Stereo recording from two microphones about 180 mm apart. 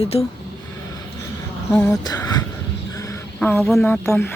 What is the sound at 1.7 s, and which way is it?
Speech, 15° left (ahead or behind).